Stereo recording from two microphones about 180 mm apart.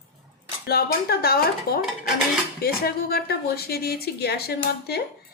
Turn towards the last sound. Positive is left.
turn(degrees=60)  # may be behind; listen again after turning